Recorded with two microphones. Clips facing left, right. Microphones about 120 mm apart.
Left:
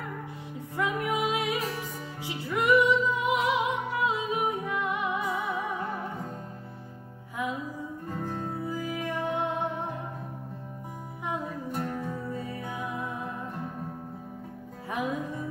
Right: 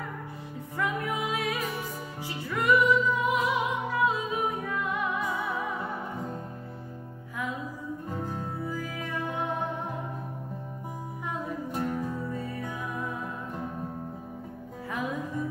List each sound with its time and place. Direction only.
0.7 s music: 20° left (ahead or behind)
8.7 s music: 20° left (ahead or behind)
11.7 s music: 5° right (ahead or behind)
12.6 s music: 20° left (ahead or behind)